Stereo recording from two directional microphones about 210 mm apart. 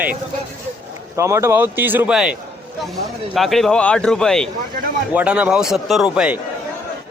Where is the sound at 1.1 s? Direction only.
15° right (ahead or behind).